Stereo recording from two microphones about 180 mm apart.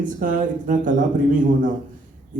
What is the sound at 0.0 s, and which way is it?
A man's voice, 45° right (ahead or behind).